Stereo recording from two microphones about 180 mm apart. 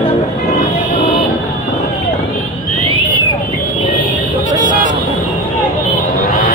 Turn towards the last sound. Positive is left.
turn(degrees=45)  # may be behind; listen again after turning